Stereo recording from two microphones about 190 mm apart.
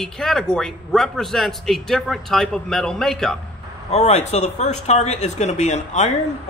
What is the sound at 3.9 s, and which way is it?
Speech, 35° left (ahead or behind).